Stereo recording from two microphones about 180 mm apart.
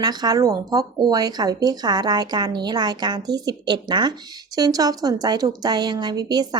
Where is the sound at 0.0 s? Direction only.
25° right (ahead or behind).